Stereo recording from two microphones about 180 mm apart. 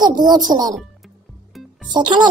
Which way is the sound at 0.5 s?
20° right (ahead or behind).